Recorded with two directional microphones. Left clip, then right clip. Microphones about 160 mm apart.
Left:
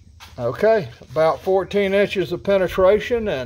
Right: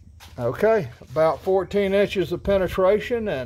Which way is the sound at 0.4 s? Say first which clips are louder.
Left 3 dB; 25° right (ahead or behind).